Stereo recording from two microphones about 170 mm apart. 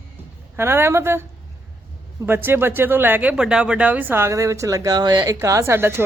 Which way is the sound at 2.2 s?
15° right (ahead or behind).